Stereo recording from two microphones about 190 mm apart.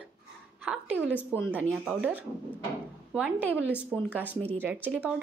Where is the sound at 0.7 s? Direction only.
5° right (ahead or behind).